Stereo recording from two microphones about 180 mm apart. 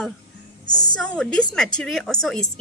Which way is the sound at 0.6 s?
25° left (ahead or behind).